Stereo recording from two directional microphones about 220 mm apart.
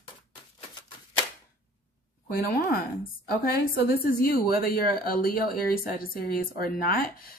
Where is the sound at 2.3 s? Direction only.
45° left (ahead or behind).